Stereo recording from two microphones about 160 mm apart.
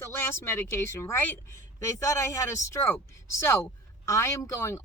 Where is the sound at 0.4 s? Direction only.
15° left (ahead or behind).